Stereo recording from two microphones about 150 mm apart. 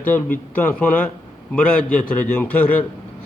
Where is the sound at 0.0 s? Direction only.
10° left (ahead or behind).